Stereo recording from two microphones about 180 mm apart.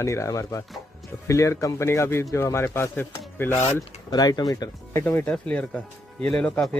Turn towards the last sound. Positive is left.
turn(degrees=5)  # may be behind; listen again after turning